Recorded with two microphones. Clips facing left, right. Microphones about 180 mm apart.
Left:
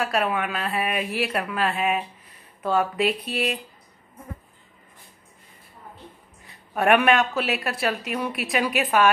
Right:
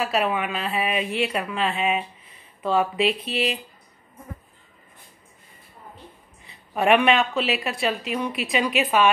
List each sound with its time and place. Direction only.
0.0 s speech: centre (ahead or behind)
6.4 s speech: centre (ahead or behind)